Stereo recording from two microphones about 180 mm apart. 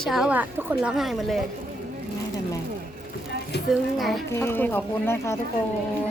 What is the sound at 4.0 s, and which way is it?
Speech, centre (ahead or behind).